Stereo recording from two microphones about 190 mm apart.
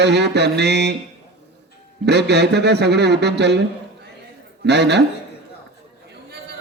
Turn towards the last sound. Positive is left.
turn(degrees=-65)  # may be behind; listen again after turning